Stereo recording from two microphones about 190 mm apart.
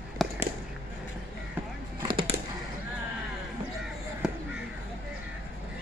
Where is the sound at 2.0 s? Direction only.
25° right (ahead or behind).